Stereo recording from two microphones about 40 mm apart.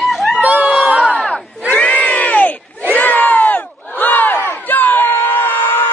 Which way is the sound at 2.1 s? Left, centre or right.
Left.